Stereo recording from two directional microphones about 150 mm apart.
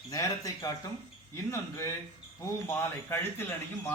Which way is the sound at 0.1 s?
25° left (ahead or behind).